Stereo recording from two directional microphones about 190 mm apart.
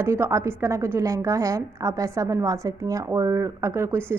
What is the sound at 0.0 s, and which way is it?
A woman's voice, 15° right (ahead or behind).